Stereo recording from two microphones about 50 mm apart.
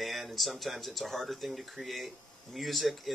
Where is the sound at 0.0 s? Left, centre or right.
Centre.